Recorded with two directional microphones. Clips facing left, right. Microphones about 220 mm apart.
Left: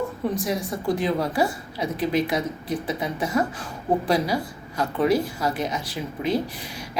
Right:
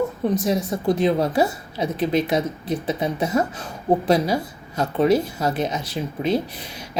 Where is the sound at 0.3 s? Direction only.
20° right (ahead or behind).